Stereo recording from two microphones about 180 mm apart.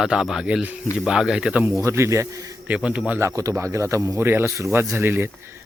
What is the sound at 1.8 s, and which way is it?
Speech, 15° right (ahead or behind).